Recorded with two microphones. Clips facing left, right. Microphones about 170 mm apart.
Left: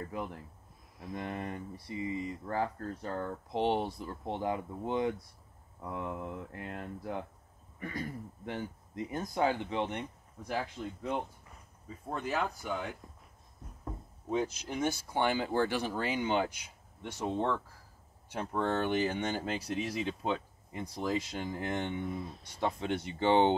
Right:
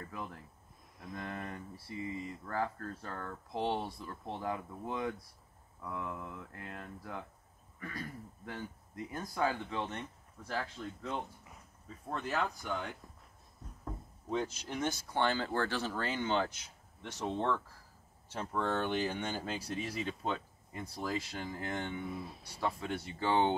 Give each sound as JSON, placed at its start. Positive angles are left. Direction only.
{"t": 0.0, "sound": "speech", "side_deg": 20}
{"t": 8.5, "sound": "speech", "side_deg": 25}
{"t": 22.0, "sound": "speech", "side_deg": -5}
{"t": 22.6, "sound": "speech", "side_deg": 20}